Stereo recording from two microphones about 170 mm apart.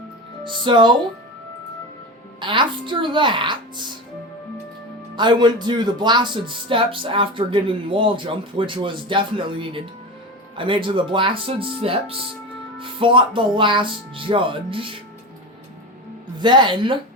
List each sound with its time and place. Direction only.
0.4 s speech: 30° right (ahead or behind)
2.4 s speech: 30° right (ahead or behind)
5.1 s speech: 25° right (ahead or behind)
16.4 s speech: 25° right (ahead or behind)